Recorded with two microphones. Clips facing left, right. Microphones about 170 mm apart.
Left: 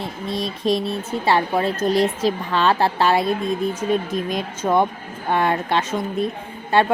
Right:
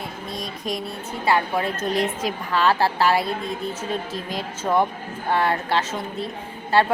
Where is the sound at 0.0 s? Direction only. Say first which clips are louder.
Left 6 dB; 25° left (ahead or behind).